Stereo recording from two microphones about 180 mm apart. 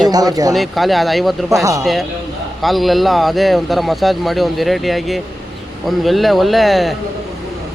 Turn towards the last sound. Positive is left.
turn(degrees=0)  # may be behind; listen again after turning